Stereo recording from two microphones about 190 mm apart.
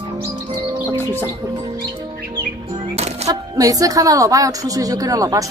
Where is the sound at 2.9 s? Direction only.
35° right (ahead or behind).